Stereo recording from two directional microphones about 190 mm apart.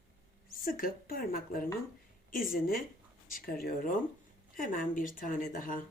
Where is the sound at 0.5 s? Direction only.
50° left (ahead or behind).